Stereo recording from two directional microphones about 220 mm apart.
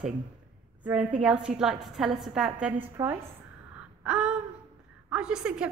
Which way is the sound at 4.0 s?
5° right (ahead or behind).